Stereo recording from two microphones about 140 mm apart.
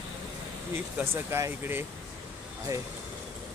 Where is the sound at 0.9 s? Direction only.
15° right (ahead or behind).